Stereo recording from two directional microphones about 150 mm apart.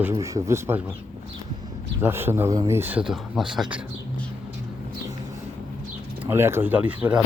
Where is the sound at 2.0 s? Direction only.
15° right (ahead or behind).